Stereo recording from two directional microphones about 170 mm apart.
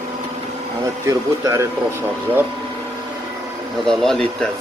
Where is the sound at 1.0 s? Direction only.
20° right (ahead or behind).